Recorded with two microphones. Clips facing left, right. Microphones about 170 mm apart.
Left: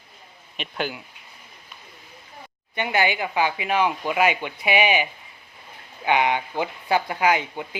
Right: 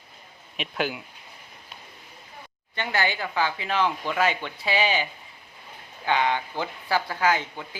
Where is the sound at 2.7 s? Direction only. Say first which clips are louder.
Left 4 dB; 15° left (ahead or behind).